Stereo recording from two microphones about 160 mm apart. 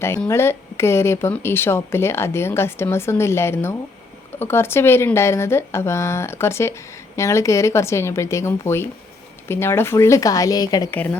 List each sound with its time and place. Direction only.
0.3 s speech: 15° left (ahead or behind)
10.9 s speech: 10° left (ahead or behind)